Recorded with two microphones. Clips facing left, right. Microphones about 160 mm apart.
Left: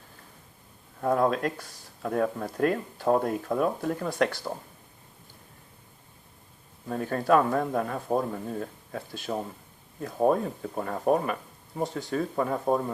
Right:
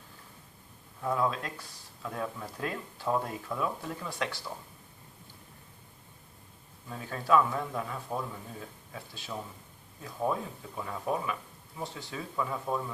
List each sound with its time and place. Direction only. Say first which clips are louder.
1.0 s speech: left 6 dB; 55° left (ahead or behind)
6.8 s speech: left 8 dB; 55° left (ahead or behind)